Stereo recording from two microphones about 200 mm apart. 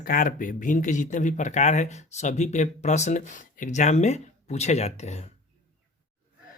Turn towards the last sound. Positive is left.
turn(degrees=35)  # may be behind; listen again after turning